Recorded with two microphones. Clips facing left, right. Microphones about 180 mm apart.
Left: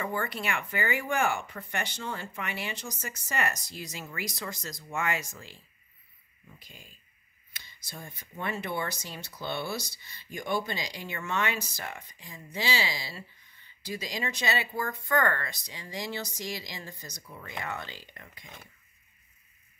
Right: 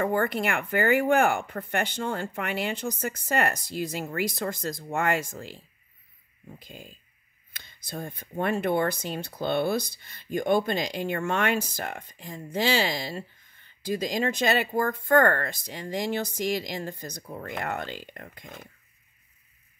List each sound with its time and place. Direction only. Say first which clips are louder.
0.0 s speech: right 8 dB; 55° right (ahead or behind)
6.5 s speech: right 9 dB; 55° right (ahead or behind)